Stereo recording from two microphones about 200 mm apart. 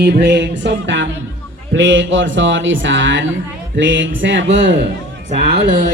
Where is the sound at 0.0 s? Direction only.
55° right (ahead or behind).